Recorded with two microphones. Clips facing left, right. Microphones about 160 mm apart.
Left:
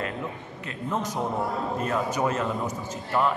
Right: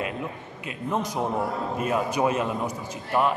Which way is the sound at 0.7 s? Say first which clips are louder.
Right 2 dB; 10° right (ahead or behind).